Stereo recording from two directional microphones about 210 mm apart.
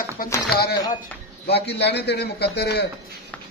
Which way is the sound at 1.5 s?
50° left (ahead or behind).